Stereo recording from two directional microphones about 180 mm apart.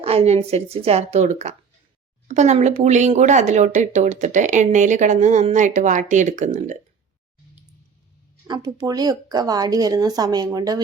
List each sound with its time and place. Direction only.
0.0 s speech: 35° right (ahead or behind)
8.4 s a woman's voice: 25° right (ahead or behind)